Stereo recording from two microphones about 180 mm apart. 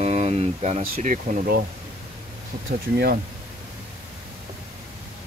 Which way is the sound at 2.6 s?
55° right (ahead or behind).